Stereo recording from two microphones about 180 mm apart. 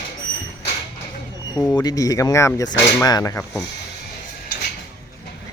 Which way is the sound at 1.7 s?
20° left (ahead or behind).